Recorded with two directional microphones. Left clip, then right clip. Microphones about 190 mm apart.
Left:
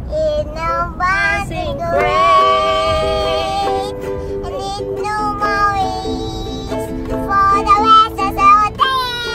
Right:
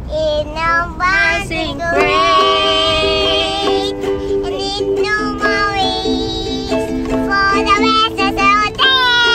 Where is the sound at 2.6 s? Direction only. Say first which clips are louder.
Right 2 dB; centre (ahead or behind).